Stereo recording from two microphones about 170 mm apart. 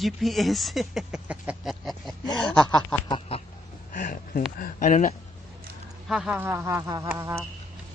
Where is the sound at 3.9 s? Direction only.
50° left (ahead or behind).